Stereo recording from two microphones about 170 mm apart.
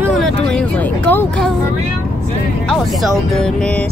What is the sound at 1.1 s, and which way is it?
Speech, 10° left (ahead or behind).